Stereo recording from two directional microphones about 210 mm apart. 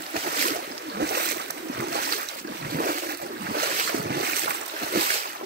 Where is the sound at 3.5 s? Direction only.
50° right (ahead or behind).